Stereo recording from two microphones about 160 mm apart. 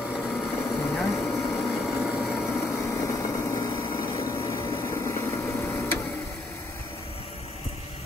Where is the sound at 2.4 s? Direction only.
15° left (ahead or behind).